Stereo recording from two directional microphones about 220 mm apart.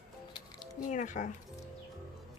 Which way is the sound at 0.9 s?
35° left (ahead or behind).